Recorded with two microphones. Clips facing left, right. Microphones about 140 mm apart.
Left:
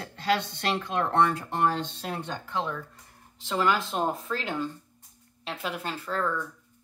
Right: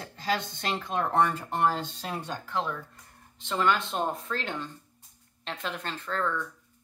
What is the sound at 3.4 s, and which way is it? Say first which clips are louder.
Speech: left 1 dB; 5° left (ahead or behind).